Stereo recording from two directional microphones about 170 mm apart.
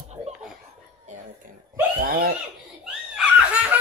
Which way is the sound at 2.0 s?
60° right (ahead or behind).